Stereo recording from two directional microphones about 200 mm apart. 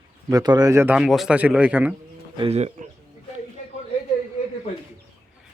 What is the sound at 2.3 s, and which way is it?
Speech, 30° right (ahead or behind).